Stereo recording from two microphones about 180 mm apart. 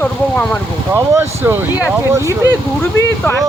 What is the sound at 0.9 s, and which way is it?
Speech, 15° right (ahead or behind).